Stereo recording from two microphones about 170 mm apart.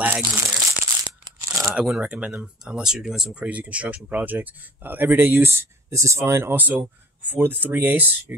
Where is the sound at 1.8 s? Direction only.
5° right (ahead or behind).